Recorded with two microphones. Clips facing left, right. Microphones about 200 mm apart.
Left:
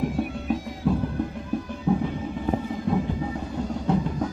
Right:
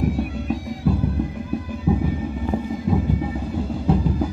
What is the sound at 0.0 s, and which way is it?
Bagpipes, centre (ahead or behind).